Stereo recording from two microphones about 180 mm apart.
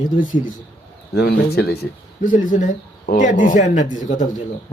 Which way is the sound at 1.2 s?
65° left (ahead or behind).